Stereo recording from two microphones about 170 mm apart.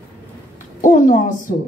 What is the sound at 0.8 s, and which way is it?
Speech, 50° left (ahead or behind).